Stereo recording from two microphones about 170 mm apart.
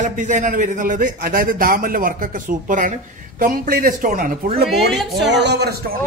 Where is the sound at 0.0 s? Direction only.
50° right (ahead or behind).